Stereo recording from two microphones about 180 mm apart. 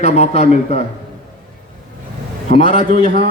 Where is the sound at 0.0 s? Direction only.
35° left (ahead or behind).